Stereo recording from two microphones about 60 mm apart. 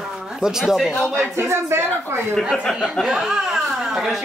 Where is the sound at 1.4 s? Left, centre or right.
Right.